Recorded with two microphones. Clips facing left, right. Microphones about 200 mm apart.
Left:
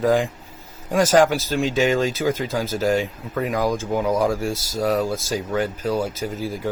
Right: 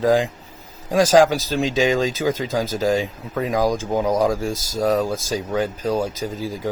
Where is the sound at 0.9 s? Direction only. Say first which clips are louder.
Right 2 dB; 10° right (ahead or behind).